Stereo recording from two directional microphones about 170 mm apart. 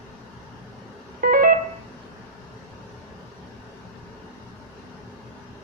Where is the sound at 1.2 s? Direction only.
55° right (ahead or behind).